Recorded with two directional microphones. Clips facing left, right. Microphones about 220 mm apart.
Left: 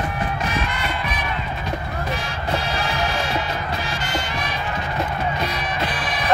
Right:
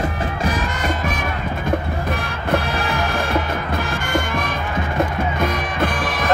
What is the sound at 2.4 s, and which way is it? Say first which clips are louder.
Music: right 5 dB; 55° right (ahead or behind).